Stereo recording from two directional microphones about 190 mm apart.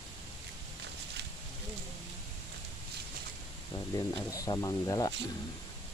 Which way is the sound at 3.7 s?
20° left (ahead or behind).